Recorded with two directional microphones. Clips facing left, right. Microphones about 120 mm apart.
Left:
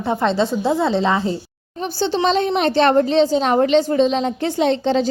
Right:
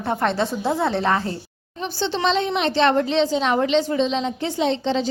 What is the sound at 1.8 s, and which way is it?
A woman's voice, 40° left (ahead or behind).